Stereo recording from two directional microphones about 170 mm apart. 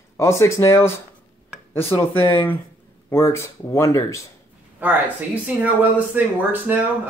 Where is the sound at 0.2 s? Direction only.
15° left (ahead or behind).